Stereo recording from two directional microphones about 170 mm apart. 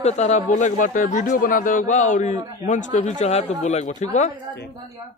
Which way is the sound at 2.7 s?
45° left (ahead or behind).